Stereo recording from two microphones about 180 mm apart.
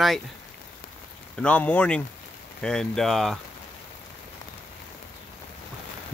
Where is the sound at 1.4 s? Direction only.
5° left (ahead or behind).